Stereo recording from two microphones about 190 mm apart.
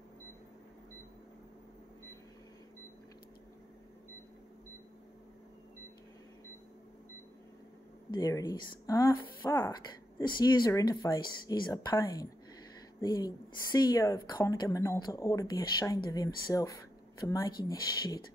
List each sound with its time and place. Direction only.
8.1 s speech: 15° left (ahead or behind)